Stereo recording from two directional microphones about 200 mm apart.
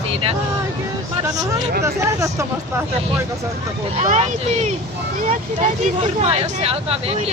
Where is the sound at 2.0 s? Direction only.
15° right (ahead or behind).